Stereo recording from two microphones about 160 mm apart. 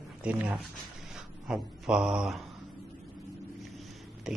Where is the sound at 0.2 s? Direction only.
5° right (ahead or behind).